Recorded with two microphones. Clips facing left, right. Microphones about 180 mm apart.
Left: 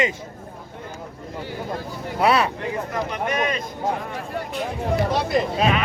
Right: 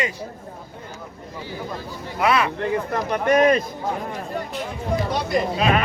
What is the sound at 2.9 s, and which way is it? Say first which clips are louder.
Bleat: right 8 dB; 50° right (ahead or behind).